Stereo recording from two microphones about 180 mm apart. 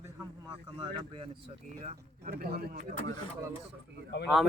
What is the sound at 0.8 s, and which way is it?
Speech, 30° right (ahead or behind).